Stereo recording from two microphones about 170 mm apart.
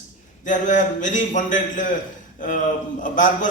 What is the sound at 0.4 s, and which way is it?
A man's voice, 45° left (ahead or behind).